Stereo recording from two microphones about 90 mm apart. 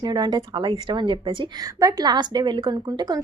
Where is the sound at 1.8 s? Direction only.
50° right (ahead or behind).